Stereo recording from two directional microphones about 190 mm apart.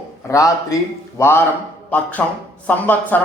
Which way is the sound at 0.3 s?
15° left (ahead or behind).